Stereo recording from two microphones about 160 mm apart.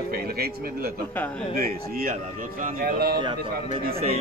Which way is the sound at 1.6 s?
65° right (ahead or behind).